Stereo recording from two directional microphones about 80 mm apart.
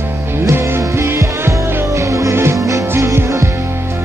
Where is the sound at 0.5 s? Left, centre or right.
Right.